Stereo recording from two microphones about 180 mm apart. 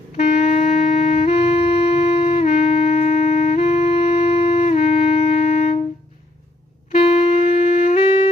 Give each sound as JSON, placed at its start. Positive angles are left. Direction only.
{"t": 0.2, "sound": "music", "side_deg": 40}
{"t": 6.9, "sound": "saxophone", "side_deg": 35}